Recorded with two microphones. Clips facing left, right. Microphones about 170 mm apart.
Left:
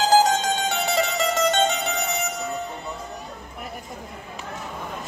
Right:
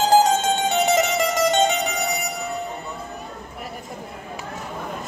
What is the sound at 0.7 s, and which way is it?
Music, 20° right (ahead or behind).